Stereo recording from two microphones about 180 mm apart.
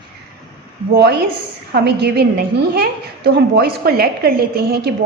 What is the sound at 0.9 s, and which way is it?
A woman's voice, 65° right (ahead or behind).